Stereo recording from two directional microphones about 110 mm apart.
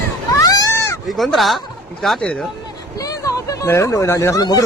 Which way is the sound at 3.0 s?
30° left (ahead or behind).